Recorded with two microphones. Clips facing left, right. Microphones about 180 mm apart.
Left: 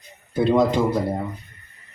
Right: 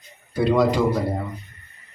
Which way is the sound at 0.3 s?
20° left (ahead or behind).